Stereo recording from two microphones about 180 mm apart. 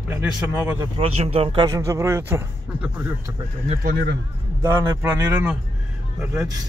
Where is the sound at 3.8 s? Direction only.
60° right (ahead or behind).